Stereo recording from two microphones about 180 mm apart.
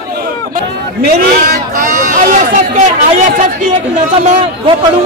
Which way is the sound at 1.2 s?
55° right (ahead or behind).